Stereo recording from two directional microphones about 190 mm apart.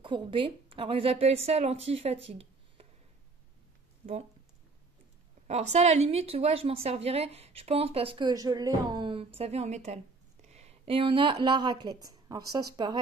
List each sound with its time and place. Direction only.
0.0 s a woman's voice: 25° right (ahead or behind)
4.0 s speech: 35° right (ahead or behind)
5.5 s a woman's voice: 35° right (ahead or behind)